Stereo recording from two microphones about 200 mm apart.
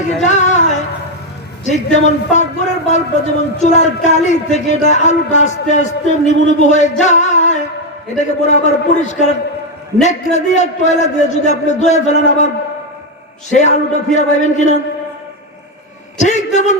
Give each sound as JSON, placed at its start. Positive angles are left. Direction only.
{"t": 0.3, "sound": "music", "side_deg": 35}
{"t": 1.6, "sound": "speech", "side_deg": 35}
{"t": 13.5, "sound": "speech", "side_deg": 35}
{"t": 16.1, "sound": "a sound", "side_deg": 35}